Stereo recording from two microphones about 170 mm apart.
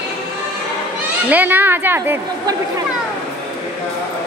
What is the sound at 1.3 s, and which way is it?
A woman's voice, 10° right (ahead or behind).